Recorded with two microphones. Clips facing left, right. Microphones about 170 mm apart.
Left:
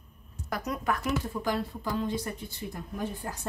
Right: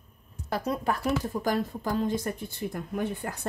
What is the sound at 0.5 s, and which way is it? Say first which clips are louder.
Speech: right 3 dB; 30° right (ahead or behind).